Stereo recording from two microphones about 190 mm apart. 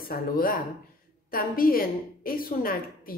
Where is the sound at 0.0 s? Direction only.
50° left (ahead or behind).